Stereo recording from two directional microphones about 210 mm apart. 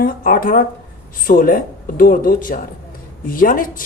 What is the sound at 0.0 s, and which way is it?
A woman's voice, 40° left (ahead or behind).